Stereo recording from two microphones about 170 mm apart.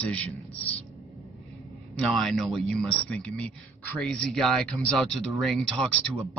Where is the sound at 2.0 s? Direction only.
Centre (ahead or behind).